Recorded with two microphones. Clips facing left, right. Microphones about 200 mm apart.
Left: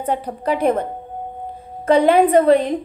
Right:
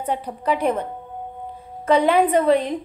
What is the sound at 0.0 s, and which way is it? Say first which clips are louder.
Speech: left 3 dB; 45° left (ahead or behind).